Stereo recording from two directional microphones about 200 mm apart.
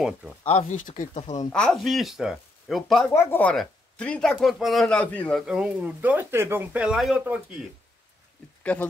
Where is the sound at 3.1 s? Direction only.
10° left (ahead or behind).